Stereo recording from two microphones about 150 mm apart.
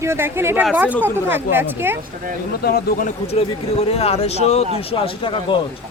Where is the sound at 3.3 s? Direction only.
45° left (ahead or behind).